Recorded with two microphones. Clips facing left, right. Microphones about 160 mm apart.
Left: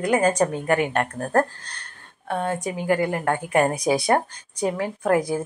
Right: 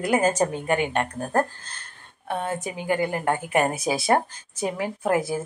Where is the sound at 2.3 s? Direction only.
5° right (ahead or behind).